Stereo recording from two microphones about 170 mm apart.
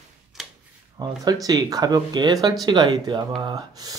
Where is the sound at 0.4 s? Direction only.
Centre (ahead or behind).